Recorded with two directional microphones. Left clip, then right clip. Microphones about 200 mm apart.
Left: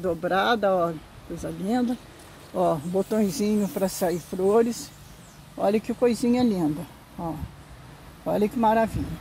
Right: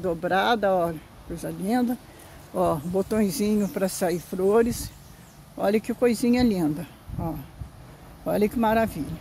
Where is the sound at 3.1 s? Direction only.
15° right (ahead or behind).